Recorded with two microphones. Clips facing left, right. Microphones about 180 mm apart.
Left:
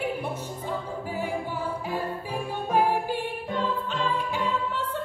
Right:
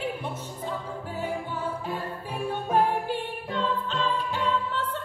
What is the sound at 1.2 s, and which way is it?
Music, 10° left (ahead or behind).